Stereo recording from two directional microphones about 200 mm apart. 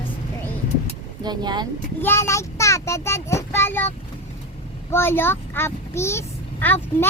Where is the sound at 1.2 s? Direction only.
20° right (ahead or behind).